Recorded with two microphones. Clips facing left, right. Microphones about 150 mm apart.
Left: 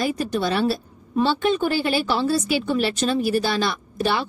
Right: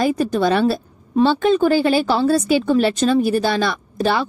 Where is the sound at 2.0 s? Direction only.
45° right (ahead or behind).